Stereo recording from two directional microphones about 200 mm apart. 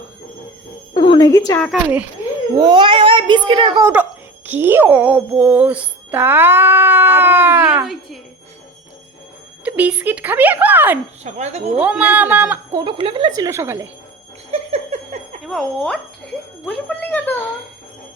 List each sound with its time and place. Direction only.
0.9 s a sound: 25° left (ahead or behind)
1.5 s a woman's voice: 5° left (ahead or behind)
2.6 s a child's voice: 20° right (ahead or behind)
4.4 s music: 10° right (ahead or behind)
9.6 s music: 5° right (ahead or behind)
11.2 s speech: 35° right (ahead or behind)
11.8 s music: 5° right (ahead or behind)
12.7 s a child's voice: 25° right (ahead or behind)
14.5 s a sound: 30° right (ahead or behind)
15.4 s speech: 5° left (ahead or behind)